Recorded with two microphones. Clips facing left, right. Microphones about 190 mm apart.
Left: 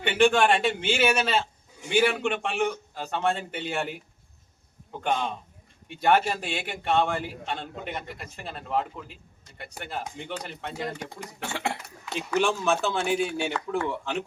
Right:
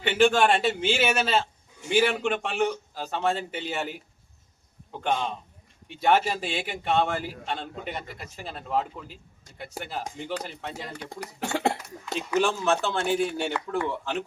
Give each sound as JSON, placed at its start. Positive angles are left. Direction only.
{"t": 0.0, "sound": "a man's voice", "side_deg": 0}
{"t": 11.3, "sound": "speech", "side_deg": -40}
{"t": 12.1, "sound": "a man's voice", "side_deg": 0}